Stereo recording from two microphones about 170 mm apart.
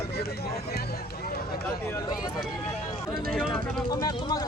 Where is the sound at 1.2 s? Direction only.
65° left (ahead or behind).